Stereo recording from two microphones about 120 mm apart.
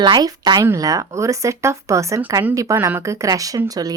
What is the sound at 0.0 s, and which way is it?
A woman's voice, 35° right (ahead or behind).